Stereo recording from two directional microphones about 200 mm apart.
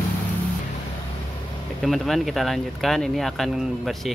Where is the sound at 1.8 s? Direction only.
Centre (ahead or behind).